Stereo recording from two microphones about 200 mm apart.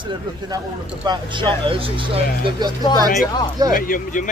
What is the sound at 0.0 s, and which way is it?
Speech, 20° right (ahead or behind).